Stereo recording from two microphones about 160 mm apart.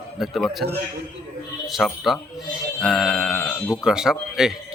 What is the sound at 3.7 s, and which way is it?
Speech, 5° right (ahead or behind).